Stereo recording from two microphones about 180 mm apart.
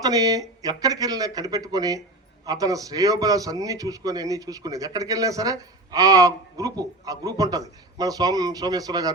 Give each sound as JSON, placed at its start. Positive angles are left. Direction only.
{"t": 0.0, "sound": "a man's voice", "side_deg": -20}